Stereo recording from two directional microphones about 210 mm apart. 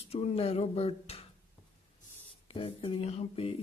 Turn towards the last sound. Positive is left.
turn(degrees=30)  # may be behind; listen again after turning